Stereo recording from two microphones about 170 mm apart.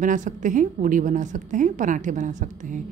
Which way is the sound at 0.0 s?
50° right (ahead or behind).